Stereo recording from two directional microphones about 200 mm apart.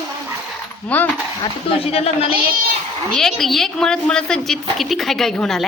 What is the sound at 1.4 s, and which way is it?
Speech, 30° left (ahead or behind).